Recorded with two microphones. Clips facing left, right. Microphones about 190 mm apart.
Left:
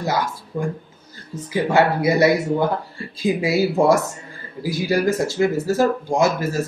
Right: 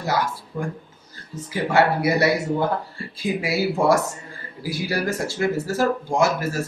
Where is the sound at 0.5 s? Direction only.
30° left (ahead or behind).